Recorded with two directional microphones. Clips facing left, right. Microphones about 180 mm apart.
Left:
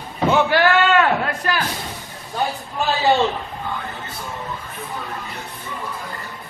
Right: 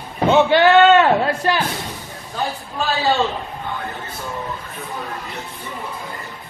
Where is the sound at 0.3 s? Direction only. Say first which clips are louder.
Right 4 dB; 20° right (ahead or behind).